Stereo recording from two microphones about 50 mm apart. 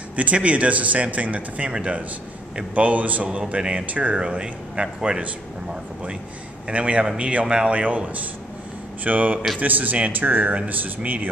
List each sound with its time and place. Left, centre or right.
0.1 s speech: right
4.2 s speech: centre
6.7 s speech: right